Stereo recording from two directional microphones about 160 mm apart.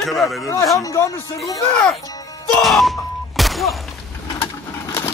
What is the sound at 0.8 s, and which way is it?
Speech, 20° left (ahead or behind).